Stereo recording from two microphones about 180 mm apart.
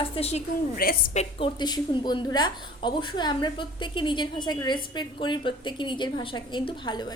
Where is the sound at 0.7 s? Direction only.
55° left (ahead or behind).